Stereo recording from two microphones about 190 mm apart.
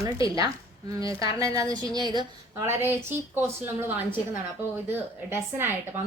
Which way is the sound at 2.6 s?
10° right (ahead or behind).